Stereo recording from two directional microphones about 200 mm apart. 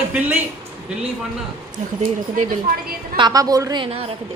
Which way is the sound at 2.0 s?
40° right (ahead or behind).